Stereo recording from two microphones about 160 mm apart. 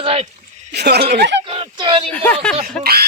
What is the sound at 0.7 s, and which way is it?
Speech, 90° right.